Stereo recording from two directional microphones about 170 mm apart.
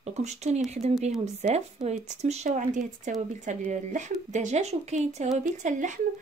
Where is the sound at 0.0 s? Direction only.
40° right (ahead or behind).